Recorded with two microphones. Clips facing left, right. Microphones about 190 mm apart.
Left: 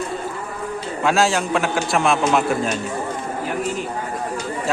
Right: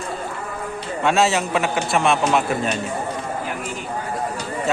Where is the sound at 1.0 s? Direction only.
Centre (ahead or behind).